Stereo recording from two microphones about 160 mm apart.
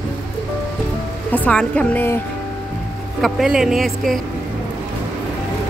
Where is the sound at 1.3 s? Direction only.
10° left (ahead or behind).